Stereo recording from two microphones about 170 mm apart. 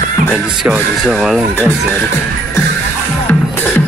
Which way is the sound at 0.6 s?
Centre (ahead or behind).